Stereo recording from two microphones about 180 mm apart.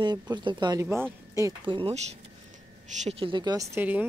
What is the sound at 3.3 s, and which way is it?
Speech, 20° right (ahead or behind).